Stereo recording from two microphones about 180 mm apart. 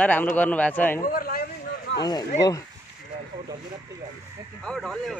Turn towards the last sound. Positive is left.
turn(degrees=0)  # may be behind; listen again after turning